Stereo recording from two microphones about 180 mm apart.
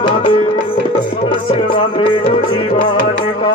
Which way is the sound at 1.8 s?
30° left (ahead or behind).